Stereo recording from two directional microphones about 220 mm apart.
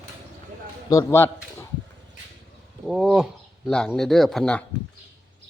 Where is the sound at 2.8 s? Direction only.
5° right (ahead or behind).